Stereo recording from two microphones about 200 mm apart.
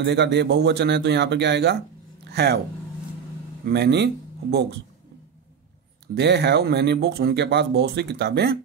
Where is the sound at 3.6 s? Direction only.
55° right (ahead or behind).